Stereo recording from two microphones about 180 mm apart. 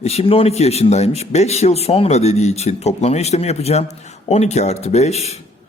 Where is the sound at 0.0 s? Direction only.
35° left (ahead or behind).